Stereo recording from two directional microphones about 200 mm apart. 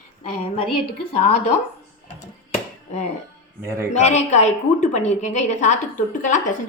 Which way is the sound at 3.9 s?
35° left (ahead or behind).